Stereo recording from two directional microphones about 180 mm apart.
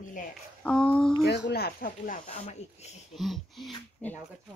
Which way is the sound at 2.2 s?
35° left (ahead or behind).